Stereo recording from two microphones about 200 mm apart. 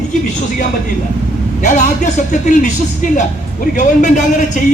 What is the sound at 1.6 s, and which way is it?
A man's voice, 40° left (ahead or behind).